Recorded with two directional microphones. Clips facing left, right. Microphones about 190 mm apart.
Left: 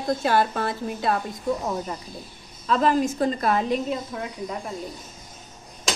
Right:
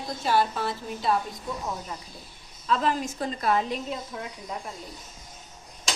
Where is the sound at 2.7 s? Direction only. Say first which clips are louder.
Left 5 dB; 45° left (ahead or behind).